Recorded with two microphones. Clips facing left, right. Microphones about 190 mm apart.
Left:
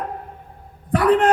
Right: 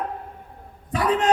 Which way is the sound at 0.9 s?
55° left (ahead or behind).